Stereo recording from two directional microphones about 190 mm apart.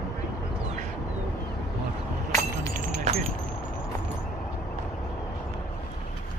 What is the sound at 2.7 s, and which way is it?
Keys jangling, 40° right (ahead or behind).